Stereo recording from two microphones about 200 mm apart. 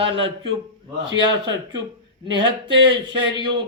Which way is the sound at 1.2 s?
20° right (ahead or behind).